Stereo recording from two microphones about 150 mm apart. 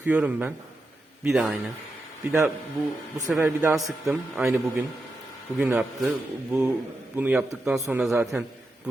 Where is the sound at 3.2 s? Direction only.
15° right (ahead or behind).